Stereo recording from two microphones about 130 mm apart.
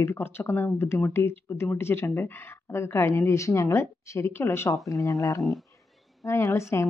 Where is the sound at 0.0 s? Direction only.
20° left (ahead or behind).